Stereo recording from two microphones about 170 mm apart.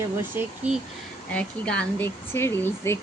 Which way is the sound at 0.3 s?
5° right (ahead or behind).